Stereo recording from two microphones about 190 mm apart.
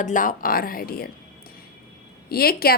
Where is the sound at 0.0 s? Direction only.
45° left (ahead or behind).